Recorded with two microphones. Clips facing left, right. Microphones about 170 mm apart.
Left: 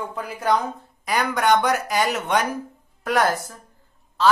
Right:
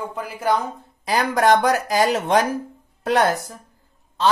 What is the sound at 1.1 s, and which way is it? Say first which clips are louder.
Speech: right 3 dB; 35° right (ahead or behind).